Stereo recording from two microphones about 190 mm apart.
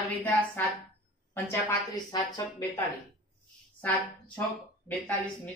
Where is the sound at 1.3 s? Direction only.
15° left (ahead or behind).